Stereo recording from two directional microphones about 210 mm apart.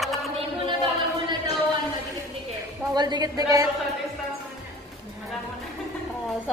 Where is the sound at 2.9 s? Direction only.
20° right (ahead or behind).